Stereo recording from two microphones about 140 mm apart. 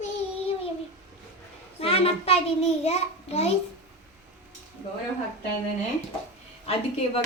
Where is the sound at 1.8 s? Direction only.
45° left (ahead or behind).